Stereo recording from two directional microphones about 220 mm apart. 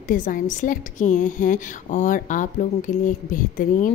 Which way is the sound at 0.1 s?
35° left (ahead or behind).